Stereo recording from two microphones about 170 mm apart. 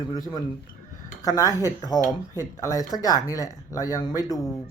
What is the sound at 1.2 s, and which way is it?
A woman's voice, 20° left (ahead or behind).